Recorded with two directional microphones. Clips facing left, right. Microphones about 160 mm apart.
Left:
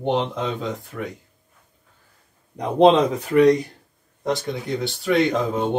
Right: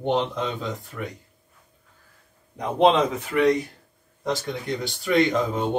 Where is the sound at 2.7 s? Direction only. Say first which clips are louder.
Left 4 dB; 35° left (ahead or behind).